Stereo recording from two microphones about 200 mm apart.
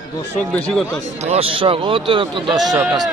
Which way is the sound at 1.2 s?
30° right (ahead or behind).